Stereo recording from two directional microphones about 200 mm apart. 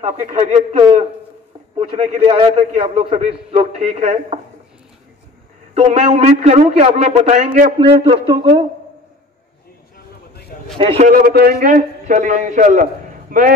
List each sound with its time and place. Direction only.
0.0 s a man's voice: 35° right (ahead or behind)
5.8 s a man's voice: 35° right (ahead or behind)
7.8 s speech: 25° right (ahead or behind)
10.8 s speech: 25° right (ahead or behind)
11.1 s a man's voice: 45° right (ahead or behind)